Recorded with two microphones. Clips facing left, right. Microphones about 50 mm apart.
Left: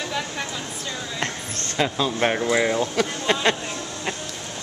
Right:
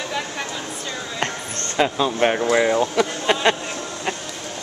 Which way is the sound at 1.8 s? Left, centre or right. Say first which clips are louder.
Right 3 dB; centre.